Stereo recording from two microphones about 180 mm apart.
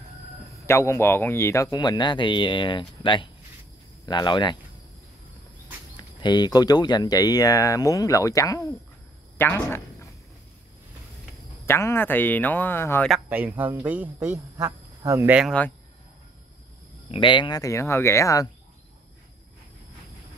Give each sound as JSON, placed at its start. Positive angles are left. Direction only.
{"t": 0.7, "sound": "speech", "side_deg": 15}
{"t": 5.9, "sound": "speech", "side_deg": 25}
{"t": 11.6, "sound": "speech", "side_deg": 15}
{"t": 13.1, "sound": "speech", "side_deg": -10}
{"t": 17.1, "sound": "speech", "side_deg": 30}